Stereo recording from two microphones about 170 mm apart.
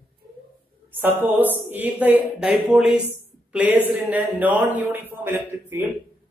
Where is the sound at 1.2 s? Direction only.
10° right (ahead or behind).